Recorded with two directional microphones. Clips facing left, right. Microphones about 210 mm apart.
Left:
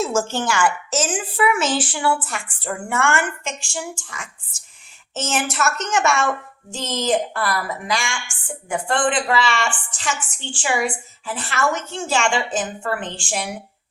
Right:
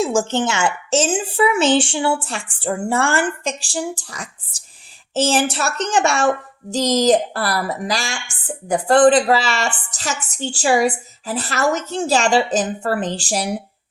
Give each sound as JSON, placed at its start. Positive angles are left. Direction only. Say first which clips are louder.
{"t": 0.0, "sound": "a woman's voice", "louder": "right 3 dB", "side_deg": -15}